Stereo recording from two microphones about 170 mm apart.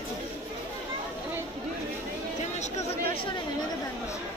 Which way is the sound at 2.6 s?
35° left (ahead or behind).